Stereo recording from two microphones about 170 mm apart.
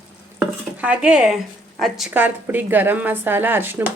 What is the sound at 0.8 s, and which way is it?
A woman's voice, 5° right (ahead or behind).